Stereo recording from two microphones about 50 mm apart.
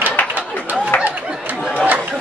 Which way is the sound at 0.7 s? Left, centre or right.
Right.